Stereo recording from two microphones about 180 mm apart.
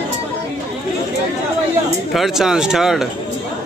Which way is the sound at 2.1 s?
Centre (ahead or behind).